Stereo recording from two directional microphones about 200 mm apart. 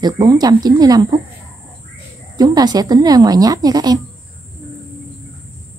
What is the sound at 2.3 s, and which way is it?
A woman's voice, 20° right (ahead or behind).